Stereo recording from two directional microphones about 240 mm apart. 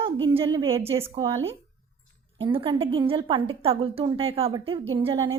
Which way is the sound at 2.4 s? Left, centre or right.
Right.